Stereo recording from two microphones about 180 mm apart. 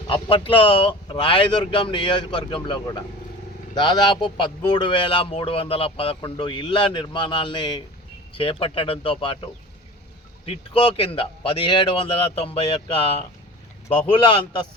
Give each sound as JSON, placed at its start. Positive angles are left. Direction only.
{"t": 0.1, "sound": "a man's voice", "side_deg": 30}
{"t": 10.4, "sound": "a man's voice", "side_deg": 30}